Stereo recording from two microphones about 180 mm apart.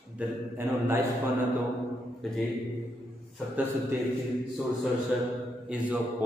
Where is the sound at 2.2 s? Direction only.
Centre (ahead or behind).